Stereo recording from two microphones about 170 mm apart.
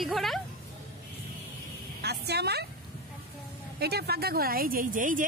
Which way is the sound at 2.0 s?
75° right (ahead or behind).